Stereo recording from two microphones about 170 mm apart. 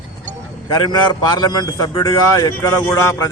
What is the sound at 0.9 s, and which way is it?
A man's voice, 25° left (ahead or behind).